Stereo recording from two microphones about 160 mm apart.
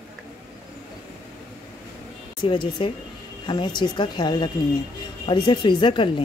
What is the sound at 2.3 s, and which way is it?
A woman's voice, 30° left (ahead or behind).